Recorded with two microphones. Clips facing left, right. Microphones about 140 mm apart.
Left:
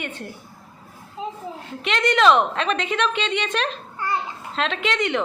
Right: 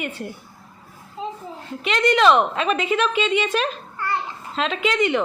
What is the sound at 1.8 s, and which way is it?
A woman's voice, centre (ahead or behind).